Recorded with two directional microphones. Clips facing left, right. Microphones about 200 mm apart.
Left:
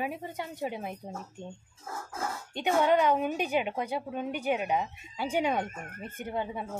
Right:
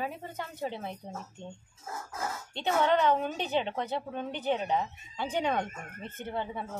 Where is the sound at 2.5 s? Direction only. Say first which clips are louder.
Left 2 dB; 10° left (ahead or behind).